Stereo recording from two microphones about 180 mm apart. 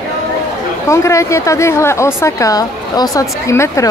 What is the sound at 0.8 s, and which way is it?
A woman's voice, 15° left (ahead or behind).